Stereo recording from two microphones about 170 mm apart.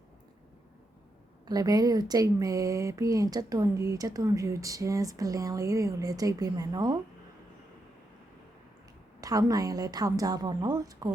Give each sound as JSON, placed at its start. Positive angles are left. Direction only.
{"t": 1.5, "sound": "speech", "side_deg": -20}
{"t": 9.2, "sound": "speech", "side_deg": -20}